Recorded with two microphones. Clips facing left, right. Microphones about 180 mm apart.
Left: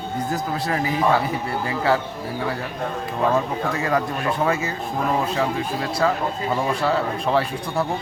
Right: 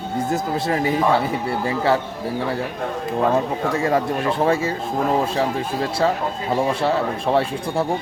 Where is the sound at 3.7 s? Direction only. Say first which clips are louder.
Right 4 dB; 30° right (ahead or behind).